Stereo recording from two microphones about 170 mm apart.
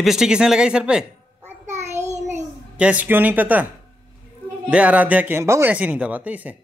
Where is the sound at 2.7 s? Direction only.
10° right (ahead or behind).